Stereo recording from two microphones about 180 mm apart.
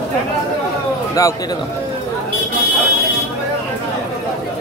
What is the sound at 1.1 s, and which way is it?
Speech, 20° left (ahead or behind).